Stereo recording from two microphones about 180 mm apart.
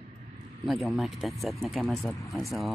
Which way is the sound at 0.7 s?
Centre (ahead or behind).